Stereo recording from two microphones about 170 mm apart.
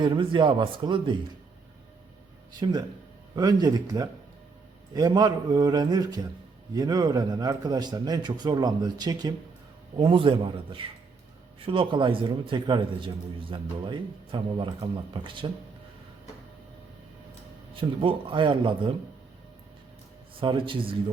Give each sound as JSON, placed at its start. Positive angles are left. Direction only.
{"t": 0.0, "sound": "a man's voice", "side_deg": -30}
{"t": 2.6, "sound": "a man's voice", "side_deg": -25}
{"t": 17.7, "sound": "a man's voice", "side_deg": -30}
{"t": 20.4, "sound": "a man's voice", "side_deg": -30}